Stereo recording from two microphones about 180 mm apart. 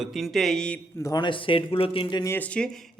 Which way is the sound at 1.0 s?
25° left (ahead or behind).